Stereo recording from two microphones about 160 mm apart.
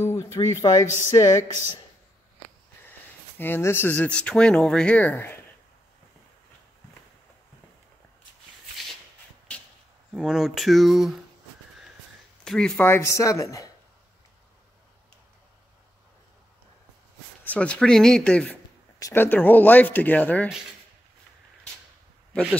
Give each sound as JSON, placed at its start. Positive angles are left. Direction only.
{"t": 0.0, "sound": "speech", "side_deg": 20}
{"t": 1.1, "sound": "a sound", "side_deg": 25}
{"t": 3.3, "sound": "speech", "side_deg": 15}
{"t": 10.1, "sound": "speech", "side_deg": -5}
{"t": 12.4, "sound": "speech", "side_deg": 5}
{"t": 17.5, "sound": "speech", "side_deg": 5}